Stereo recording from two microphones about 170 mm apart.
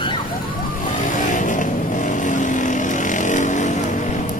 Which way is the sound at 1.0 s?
50° left (ahead or behind).